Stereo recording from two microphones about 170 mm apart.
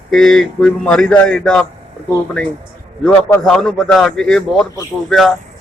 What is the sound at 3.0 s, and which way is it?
A man's voice, 5° left (ahead or behind).